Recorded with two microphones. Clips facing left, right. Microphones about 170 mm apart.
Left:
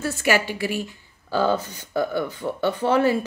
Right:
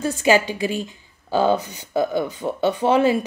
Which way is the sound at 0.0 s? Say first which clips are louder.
Right 4 dB; 20° right (ahead or behind).